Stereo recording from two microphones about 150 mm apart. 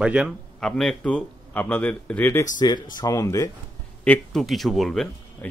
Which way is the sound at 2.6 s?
30° left (ahead or behind).